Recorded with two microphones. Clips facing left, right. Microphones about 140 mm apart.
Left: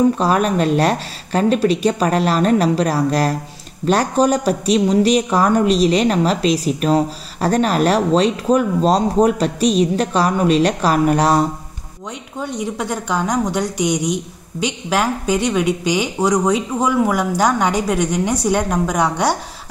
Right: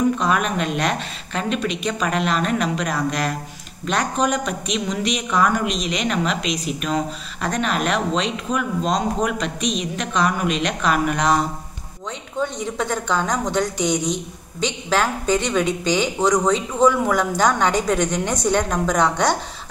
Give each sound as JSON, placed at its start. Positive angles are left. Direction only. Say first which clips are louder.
{"t": 0.2, "sound": "speech", "louder": "left 5 dB", "side_deg": 35}
{"t": 12.4, "sound": "a woman's voice", "louder": "left 1 dB", "side_deg": 10}